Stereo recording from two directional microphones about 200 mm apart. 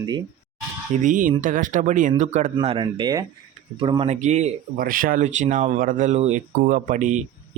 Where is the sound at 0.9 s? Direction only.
40° right (ahead or behind).